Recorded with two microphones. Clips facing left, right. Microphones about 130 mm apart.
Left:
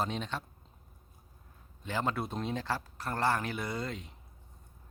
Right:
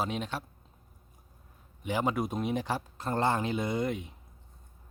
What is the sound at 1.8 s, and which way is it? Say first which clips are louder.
Speech: right 4 dB; 15° right (ahead or behind).